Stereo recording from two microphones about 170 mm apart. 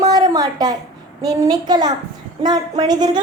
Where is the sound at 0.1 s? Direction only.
20° right (ahead or behind).